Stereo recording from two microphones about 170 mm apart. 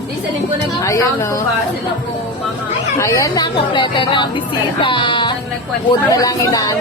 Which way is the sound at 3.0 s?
20° left (ahead or behind).